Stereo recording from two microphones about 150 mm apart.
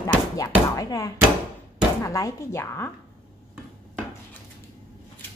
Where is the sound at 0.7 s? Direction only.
25° left (ahead or behind).